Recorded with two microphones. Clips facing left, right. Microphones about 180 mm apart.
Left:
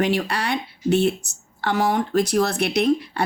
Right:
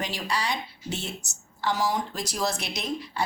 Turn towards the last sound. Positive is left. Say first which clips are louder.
# left 12 dB
turn(degrees=60)  # may be behind; listen again after turning